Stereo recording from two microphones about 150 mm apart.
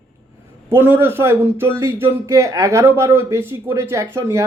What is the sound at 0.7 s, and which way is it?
A man's voice, 15° right (ahead or behind).